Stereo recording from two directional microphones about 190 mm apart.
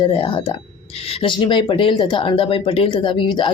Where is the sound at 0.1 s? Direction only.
30° left (ahead or behind).